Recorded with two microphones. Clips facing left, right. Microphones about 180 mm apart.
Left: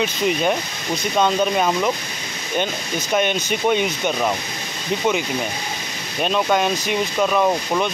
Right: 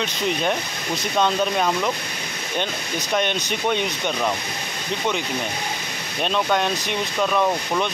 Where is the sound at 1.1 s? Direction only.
5° left (ahead or behind).